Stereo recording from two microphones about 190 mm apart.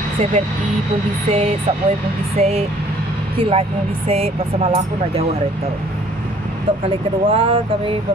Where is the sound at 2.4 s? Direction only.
35° right (ahead or behind).